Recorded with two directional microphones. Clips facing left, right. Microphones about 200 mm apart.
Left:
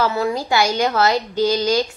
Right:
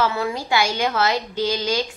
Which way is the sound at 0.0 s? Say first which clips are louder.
Left 3 dB; 40° left (ahead or behind).